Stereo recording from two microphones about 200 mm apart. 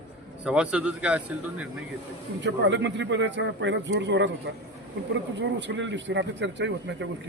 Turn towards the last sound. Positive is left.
turn(degrees=-60)  # may be behind; listen again after turning